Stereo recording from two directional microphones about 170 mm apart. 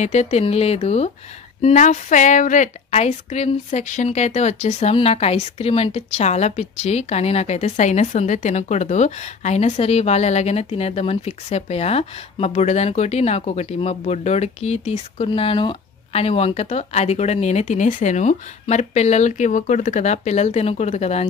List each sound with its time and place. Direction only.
0.0 s a woman's voice: 40° left (ahead or behind)